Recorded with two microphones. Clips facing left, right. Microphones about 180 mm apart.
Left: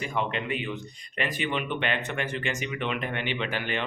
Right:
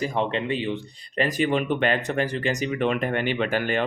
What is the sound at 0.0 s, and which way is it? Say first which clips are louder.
Speech: right 5 dB; 35° right (ahead or behind).